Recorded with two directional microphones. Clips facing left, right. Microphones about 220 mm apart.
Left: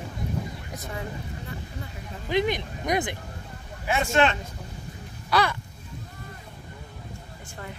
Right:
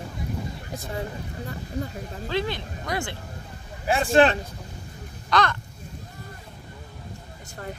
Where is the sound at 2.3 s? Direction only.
15° left (ahead or behind).